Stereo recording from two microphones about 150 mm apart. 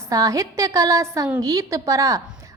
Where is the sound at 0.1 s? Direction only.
20° right (ahead or behind).